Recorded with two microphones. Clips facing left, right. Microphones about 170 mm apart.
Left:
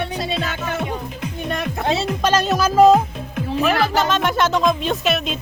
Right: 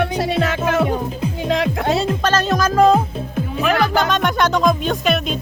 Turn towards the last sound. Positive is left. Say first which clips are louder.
# right 2 dB
turn(degrees=0)  # may be behind; listen again after turning